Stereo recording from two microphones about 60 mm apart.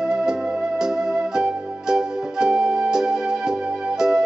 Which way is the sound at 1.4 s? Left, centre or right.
Centre.